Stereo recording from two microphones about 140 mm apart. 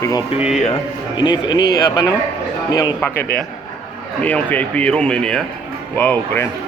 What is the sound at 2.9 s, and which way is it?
Speech, 15° left (ahead or behind).